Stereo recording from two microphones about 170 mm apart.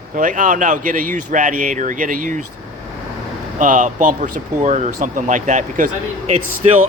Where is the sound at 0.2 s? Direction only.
50° right (ahead or behind).